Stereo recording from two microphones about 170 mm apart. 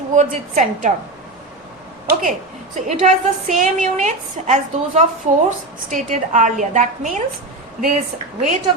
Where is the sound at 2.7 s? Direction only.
45° right (ahead or behind).